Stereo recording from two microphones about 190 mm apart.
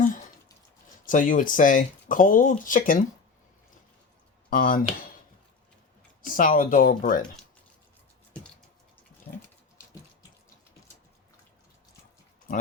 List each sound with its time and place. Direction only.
1.0 s speech: 45° left (ahead or behind)
4.4 s speech: 50° left (ahead or behind)
6.2 s speech: 45° left (ahead or behind)